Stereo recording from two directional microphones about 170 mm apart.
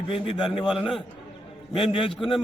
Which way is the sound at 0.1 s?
30° left (ahead or behind).